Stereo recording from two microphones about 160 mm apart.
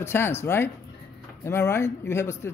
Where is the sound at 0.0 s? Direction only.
15° left (ahead or behind).